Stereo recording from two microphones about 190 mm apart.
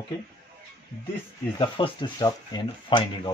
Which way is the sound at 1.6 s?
25° left (ahead or behind).